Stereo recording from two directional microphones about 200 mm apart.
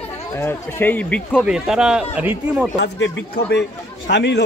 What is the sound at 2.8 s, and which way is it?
Speech, 65° left (ahead or behind).